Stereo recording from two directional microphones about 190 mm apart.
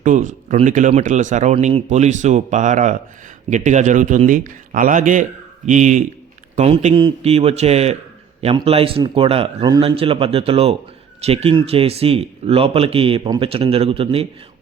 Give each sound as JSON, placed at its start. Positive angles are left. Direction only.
{"t": 0.0, "sound": "a man's voice", "side_deg": -45}